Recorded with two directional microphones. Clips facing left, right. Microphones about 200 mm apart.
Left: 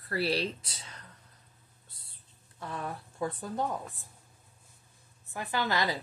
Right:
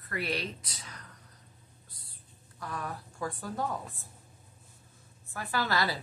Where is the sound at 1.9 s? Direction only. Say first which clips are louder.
Right 3 dB; 25° left (ahead or behind).